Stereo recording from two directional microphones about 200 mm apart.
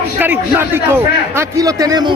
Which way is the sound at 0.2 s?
10° right (ahead or behind).